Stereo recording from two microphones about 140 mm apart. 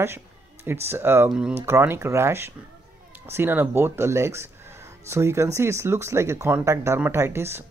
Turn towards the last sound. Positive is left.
turn(degrees=-20)  # may be behind; listen again after turning